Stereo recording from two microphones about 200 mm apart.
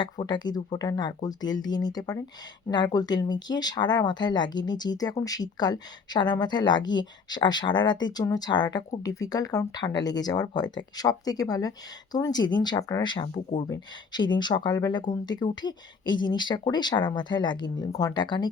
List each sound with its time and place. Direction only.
0.0 s speech: 20° left (ahead or behind)